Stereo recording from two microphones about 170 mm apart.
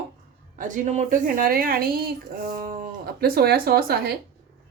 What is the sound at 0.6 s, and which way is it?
A woman's voice, 50° right (ahead or behind).